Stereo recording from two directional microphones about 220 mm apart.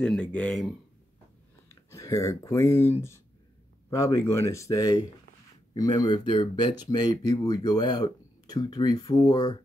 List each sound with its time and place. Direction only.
0.0 s speech: 5° left (ahead or behind)
1.9 s speech: 15° left (ahead or behind)